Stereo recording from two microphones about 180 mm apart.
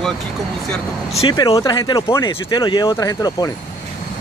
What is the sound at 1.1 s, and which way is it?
Speech, 25° left (ahead or behind).